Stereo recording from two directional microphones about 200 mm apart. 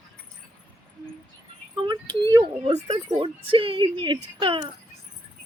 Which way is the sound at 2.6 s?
35° right (ahead or behind).